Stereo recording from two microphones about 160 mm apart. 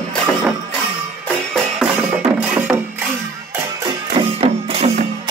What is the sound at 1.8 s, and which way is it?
Music, 5° right (ahead or behind).